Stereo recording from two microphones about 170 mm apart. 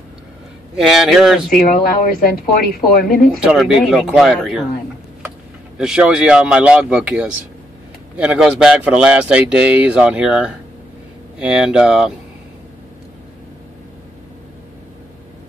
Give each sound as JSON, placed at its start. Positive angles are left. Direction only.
{"t": 0.7, "sound": "speech", "side_deg": 0}
{"t": 1.5, "sound": "speech", "side_deg": 60}
{"t": 3.4, "sound": "speech", "side_deg": 0}
{"t": 5.8, "sound": "speech", "side_deg": -5}